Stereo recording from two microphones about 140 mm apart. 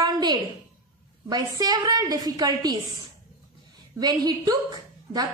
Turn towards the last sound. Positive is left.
turn(degrees=-30)  # may be behind; listen again after turning